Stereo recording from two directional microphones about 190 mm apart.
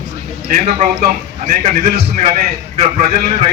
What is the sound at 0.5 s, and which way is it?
Speech, 35° right (ahead or behind).